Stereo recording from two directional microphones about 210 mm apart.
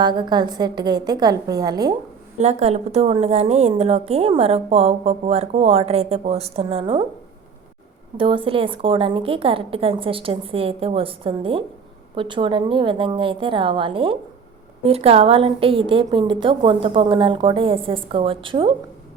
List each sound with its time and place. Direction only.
0.0 s a woman's voice: 20° right (ahead or behind)
2.4 s a woman's voice: 30° right (ahead or behind)
8.2 s a woman's voice: 25° right (ahead or behind)